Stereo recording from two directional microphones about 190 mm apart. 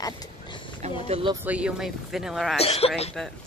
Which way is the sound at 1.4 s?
5° right (ahead or behind).